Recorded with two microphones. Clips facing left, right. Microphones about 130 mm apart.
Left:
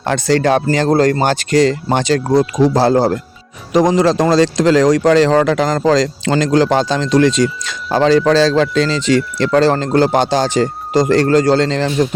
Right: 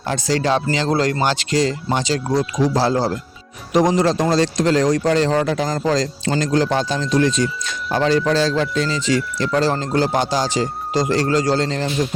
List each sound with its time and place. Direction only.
0.0 s speech: 65° left (ahead or behind)
3.9 s speech: 90° left